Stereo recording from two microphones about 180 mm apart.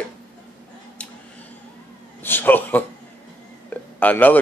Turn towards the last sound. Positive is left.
turn(degrees=10)  # may be behind; listen again after turning